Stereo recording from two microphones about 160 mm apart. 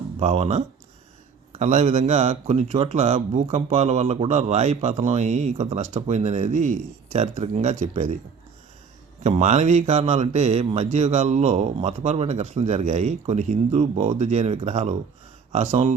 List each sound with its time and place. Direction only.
0.2 s speech: 40° right (ahead or behind)
9.2 s speech: 45° right (ahead or behind)